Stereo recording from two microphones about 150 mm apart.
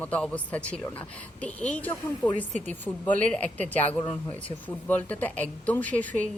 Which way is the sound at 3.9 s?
30° left (ahead or behind).